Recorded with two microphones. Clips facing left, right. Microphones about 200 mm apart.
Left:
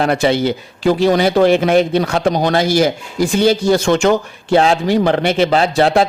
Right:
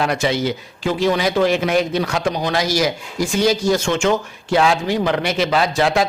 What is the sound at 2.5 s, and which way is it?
Speech, 55° left (ahead or behind).